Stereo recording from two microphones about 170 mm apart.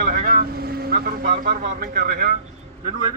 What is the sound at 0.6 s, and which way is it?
Speech, 65° right (ahead or behind).